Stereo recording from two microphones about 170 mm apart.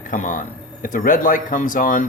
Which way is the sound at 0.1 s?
50° left (ahead or behind).